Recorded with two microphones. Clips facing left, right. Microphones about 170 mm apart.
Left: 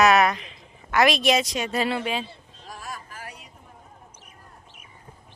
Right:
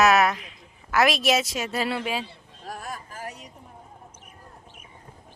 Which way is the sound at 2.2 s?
60° right (ahead or behind).